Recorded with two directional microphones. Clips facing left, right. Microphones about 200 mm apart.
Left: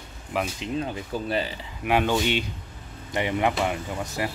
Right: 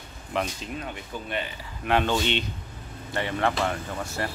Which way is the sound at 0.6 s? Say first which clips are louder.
Left 6 dB; 25° left (ahead or behind).